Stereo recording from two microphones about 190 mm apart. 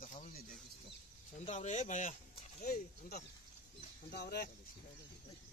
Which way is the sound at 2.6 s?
55° left (ahead or behind).